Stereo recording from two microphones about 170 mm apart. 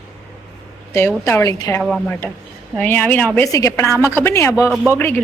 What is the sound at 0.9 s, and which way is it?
Speech, 15° left (ahead or behind).